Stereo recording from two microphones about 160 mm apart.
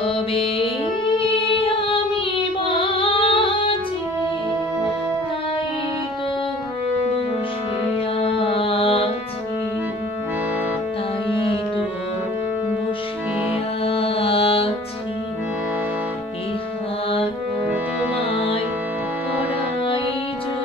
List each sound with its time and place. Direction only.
0.0 s music: 35° left (ahead or behind)
1.1 s female singing: 35° left (ahead or behind)
2.6 s music: 30° left (ahead or behind)
8.2 s music: 35° left (ahead or behind)
13.8 s music: 35° left (ahead or behind)
17.6 s music: 10° right (ahead or behind)